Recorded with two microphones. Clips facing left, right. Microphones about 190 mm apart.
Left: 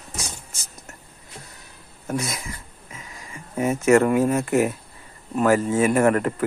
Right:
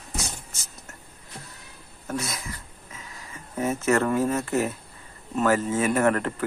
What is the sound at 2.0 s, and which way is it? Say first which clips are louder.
Speech: left 4 dB; 15° left (ahead or behind).